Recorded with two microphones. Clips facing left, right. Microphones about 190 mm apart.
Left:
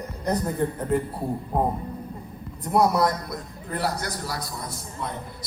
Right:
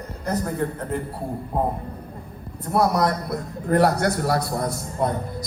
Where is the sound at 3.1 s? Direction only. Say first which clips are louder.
Right 5 dB; 60° right (ahead or behind).